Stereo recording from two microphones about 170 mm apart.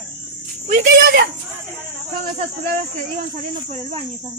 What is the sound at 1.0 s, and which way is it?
Speech, 60° right (ahead or behind).